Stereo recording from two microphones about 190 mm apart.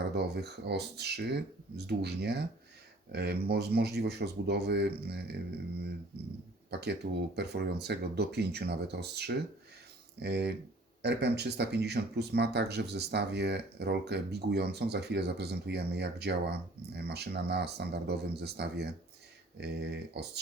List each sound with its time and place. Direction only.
0.1 s speech: 60° right (ahead or behind)